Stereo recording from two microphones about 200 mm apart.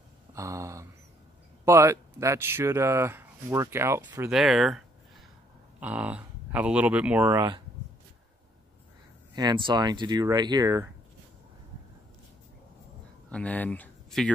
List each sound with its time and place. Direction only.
0.3 s speech: 15° right (ahead or behind)
4.3 s speech: centre (ahead or behind)
9.3 s speech: 20° right (ahead or behind)
13.3 s speech: 5° left (ahead or behind)